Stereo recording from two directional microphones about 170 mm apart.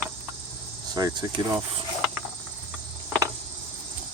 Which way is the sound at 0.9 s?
20° right (ahead or behind).